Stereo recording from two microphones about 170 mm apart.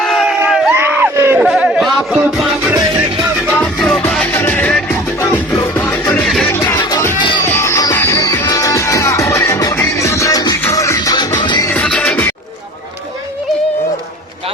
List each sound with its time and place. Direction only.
0.0 s crowd: centre (ahead or behind)
0.8 s music: 10° right (ahead or behind); by 6.5 s 5° left (ahead or behind)
6.5 s music: 15° left (ahead or behind)
7.5 s music: 15° left (ahead or behind)
11.7 s music: 5° left (ahead or behind)